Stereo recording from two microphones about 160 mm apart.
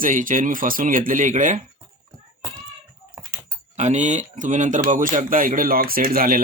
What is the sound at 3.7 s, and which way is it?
Speech, 45° right (ahead or behind).